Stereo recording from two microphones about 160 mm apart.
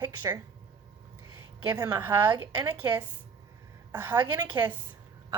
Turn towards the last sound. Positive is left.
turn(degrees=-10)  # may be behind; listen again after turning